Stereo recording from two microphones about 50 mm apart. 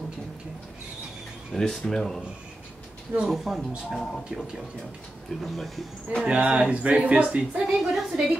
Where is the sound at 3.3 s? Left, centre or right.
Centre.